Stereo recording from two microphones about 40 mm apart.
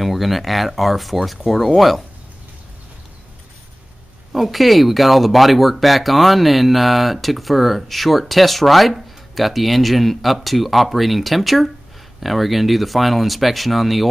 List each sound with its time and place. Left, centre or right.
0.0 s speech: centre
4.3 s speech: centre